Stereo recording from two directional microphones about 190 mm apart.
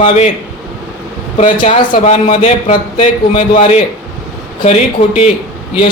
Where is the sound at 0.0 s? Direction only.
35° left (ahead or behind).